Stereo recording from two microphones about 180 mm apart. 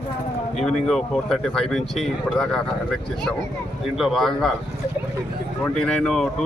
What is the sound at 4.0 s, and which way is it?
Speech, centre (ahead or behind).